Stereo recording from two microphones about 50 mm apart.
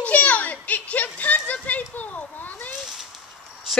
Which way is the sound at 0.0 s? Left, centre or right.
Left.